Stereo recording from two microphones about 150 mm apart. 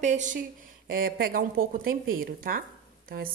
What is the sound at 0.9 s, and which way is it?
A woman's voice, 85° right.